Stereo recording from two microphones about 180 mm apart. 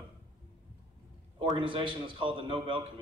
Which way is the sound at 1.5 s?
25° right (ahead or behind).